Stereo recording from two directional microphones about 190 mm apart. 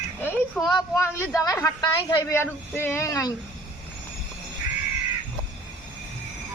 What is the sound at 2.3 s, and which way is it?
A woman's voice, 10° left (ahead or behind).